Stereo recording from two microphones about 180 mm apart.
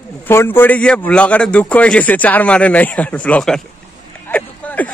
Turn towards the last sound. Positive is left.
turn(degrees=10)  # may be behind; listen again after turning